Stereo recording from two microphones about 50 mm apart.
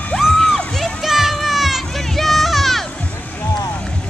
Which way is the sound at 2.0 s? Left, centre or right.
Centre.